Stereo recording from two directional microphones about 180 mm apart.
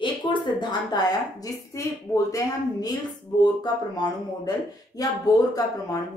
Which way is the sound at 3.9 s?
20° left (ahead or behind).